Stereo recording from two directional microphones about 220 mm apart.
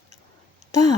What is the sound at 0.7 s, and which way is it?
Speech, 15° left (ahead or behind).